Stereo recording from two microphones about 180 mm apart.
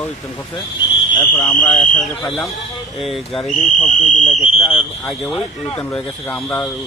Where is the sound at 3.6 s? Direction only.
45° left (ahead or behind).